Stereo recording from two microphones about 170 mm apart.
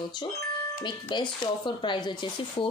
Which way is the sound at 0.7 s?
25° left (ahead or behind).